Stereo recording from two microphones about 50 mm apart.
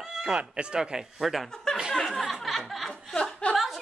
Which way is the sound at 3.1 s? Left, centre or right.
Centre.